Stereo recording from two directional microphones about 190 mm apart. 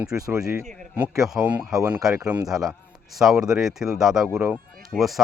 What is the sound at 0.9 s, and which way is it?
Speech, 5° right (ahead or behind).